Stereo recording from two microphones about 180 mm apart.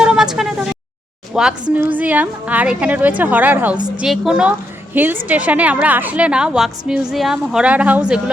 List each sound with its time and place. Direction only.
0.0 s vehicle: 5° right (ahead or behind)
1.3 s a woman's voice: 5° right (ahead or behind)
3.8 s a woman's voice: 25° right (ahead or behind)
4.0 s a woman's voice: centre (ahead or behind)